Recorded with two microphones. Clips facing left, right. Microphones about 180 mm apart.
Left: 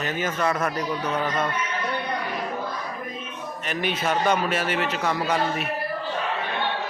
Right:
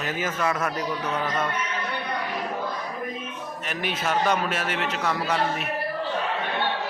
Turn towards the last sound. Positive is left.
turn(degrees=0)  # may be behind; listen again after turning